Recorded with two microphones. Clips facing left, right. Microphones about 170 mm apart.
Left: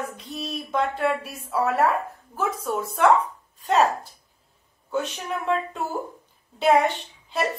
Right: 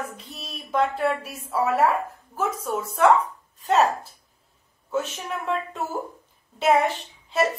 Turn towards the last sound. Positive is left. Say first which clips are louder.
# right 3 dB
turn(degrees=0)  # may be behind; listen again after turning